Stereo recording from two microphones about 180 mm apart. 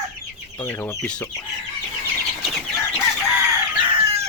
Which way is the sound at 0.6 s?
10° left (ahead or behind).